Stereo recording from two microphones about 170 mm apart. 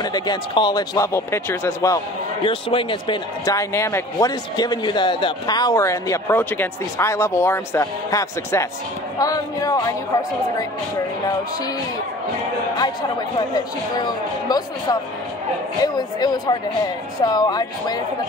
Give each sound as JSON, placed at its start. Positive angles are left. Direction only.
{"t": 0.0, "sound": "a man's voice", "side_deg": 25}
{"t": 2.4, "sound": "a man's voice", "side_deg": 30}
{"t": 13.6, "sound": "a man's voice", "side_deg": 25}